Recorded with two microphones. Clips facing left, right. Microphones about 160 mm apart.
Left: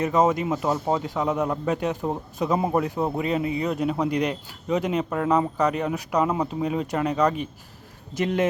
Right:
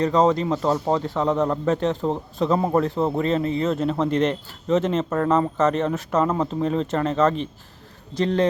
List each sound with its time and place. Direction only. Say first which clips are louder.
0.0 s speech: right 2 dB; 15° left (ahead or behind)
1.2 s a man's voice: right 4 dB; 5° left (ahead or behind)
1.6 s speech: right 3 dB; 15° left (ahead or behind)